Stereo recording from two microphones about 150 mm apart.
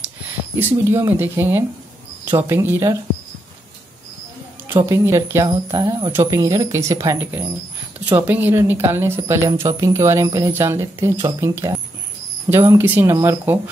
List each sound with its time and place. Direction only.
0.6 s speech: 15° right (ahead or behind)
4.7 s speech: 20° right (ahead or behind)